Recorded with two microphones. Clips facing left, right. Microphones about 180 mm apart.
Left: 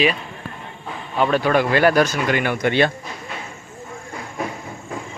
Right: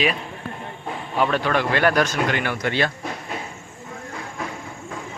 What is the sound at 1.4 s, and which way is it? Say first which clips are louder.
Speech: left 4 dB; 10° left (ahead or behind).